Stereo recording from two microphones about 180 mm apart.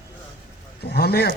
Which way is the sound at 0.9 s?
60° left (ahead or behind).